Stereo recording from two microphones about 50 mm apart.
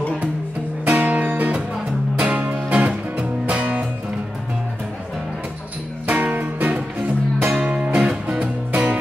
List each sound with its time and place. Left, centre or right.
0.8 s music: right
2.1 s music: centre
2.4 s music: right
6.0 s music: right
7.4 s music: centre